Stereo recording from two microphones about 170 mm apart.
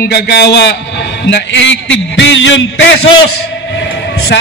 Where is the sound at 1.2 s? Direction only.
90° left.